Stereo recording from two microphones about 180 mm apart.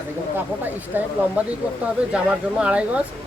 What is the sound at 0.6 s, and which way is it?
A woman's voice, 10° right (ahead or behind).